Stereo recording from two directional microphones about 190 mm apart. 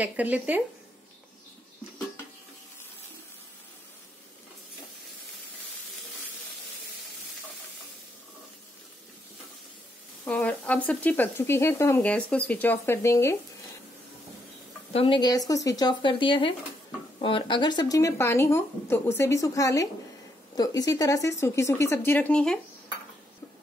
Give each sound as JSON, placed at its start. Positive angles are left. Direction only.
{"t": 0.0, "sound": "speech", "side_deg": -10}
{"t": 10.2, "sound": "speech", "side_deg": 5}
{"t": 14.9, "sound": "speech", "side_deg": 30}